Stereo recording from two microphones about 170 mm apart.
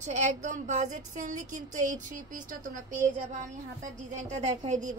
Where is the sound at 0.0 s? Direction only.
45° right (ahead or behind).